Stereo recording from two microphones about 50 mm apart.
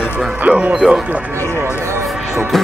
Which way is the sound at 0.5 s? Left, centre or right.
Right.